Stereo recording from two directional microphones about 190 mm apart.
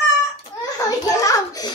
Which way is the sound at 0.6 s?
20° left (ahead or behind).